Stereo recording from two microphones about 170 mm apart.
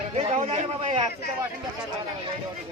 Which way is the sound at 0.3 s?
40° right (ahead or behind).